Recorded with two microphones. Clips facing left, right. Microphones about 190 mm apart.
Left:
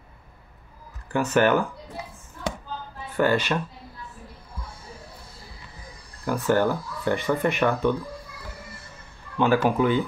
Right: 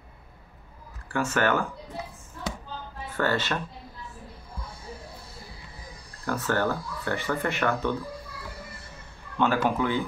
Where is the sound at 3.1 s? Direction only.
15° left (ahead or behind).